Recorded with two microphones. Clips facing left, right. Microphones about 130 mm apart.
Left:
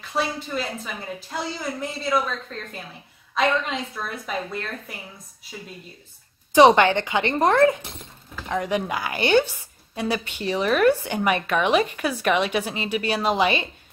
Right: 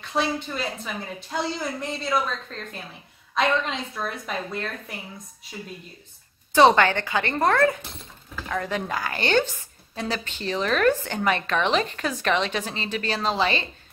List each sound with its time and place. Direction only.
0.0 s a woman's voice: centre (ahead or behind)
6.5 s a woman's voice: 15° left (ahead or behind)